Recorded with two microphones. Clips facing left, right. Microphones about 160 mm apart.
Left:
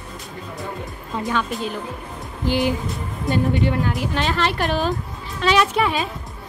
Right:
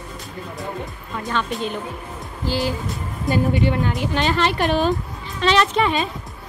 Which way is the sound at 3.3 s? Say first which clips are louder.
Right 1 dB; centre (ahead or behind).